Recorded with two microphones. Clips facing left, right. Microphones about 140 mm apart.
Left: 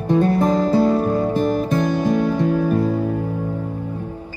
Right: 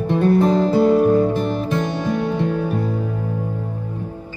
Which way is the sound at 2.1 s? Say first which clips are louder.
Left 3 dB; 40° left (ahead or behind).